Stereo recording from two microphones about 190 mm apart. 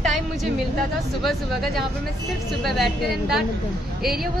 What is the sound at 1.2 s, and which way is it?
A woman's voice, centre (ahead or behind).